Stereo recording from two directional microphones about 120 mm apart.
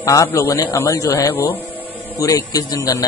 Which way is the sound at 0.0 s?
25° left (ahead or behind).